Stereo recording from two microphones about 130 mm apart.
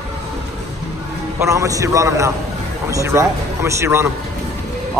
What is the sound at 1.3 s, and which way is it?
Speech, 25° right (ahead or behind).